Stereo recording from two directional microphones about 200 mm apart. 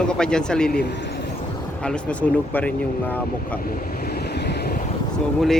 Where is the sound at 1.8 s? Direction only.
5° left (ahead or behind).